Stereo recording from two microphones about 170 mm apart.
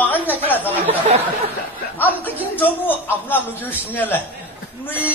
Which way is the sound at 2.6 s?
10° left (ahead or behind).